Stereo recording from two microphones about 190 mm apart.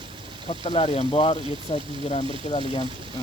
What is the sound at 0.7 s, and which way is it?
Speech, 30° left (ahead or behind).